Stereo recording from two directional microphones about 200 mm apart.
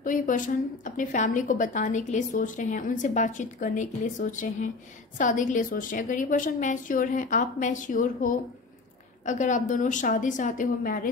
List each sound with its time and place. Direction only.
0.0 s a woman's voice: 40° left (ahead or behind)